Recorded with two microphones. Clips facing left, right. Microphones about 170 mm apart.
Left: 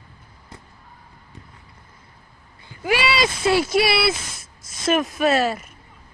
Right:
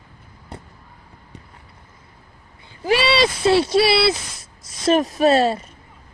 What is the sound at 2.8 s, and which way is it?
A woman's voice, 30° right (ahead or behind).